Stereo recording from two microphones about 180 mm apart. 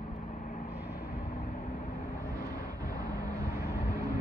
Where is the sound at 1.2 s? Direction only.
35° left (ahead or behind).